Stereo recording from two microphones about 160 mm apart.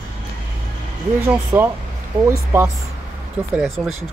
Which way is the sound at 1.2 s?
15° right (ahead or behind).